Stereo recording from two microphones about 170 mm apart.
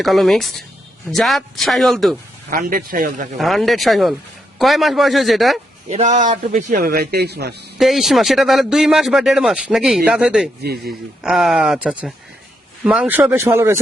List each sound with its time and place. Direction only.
0.0 s a man's voice: centre (ahead or behind)
2.5 s a man's voice: 55° right (ahead or behind)
3.3 s a man's voice: centre (ahead or behind)
5.9 s a man's voice: 45° right (ahead or behind); by 7.5 s 70° right (ahead or behind)
7.8 s a man's voice: centre (ahead or behind)
10.6 s speech: 65° right (ahead or behind)
11.2 s a man's voice: centre (ahead or behind)